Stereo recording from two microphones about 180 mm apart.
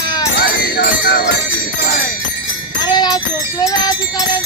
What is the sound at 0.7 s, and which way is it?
Music, 55° left (ahead or behind).